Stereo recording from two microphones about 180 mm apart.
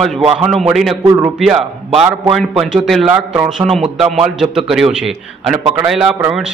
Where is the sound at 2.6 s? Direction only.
Centre (ahead or behind).